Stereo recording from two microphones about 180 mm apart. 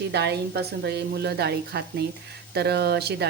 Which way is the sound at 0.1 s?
65° right (ahead or behind).